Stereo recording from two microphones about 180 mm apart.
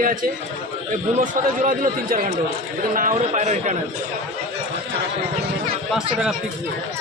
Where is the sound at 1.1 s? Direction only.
45° right (ahead or behind).